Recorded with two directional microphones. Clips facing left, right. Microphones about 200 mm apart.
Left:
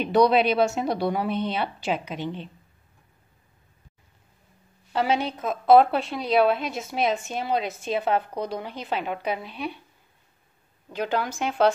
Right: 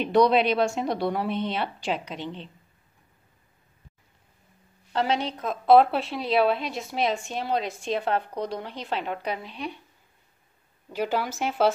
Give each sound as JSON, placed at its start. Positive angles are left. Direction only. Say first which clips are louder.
{"t": 0.0, "sound": "a woman's voice", "louder": "left 1 dB", "side_deg": 0}
{"t": 4.9, "sound": "a woman's voice", "louder": "left 2 dB", "side_deg": 10}
{"t": 10.9, "sound": "a woman's voice", "louder": "even", "side_deg": -5}